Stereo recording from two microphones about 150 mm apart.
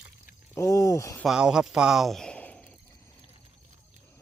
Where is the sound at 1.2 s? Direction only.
5° right (ahead or behind).